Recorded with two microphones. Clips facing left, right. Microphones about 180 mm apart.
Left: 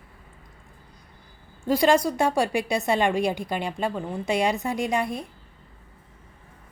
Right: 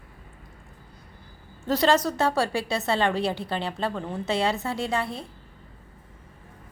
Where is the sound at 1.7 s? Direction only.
10° left (ahead or behind).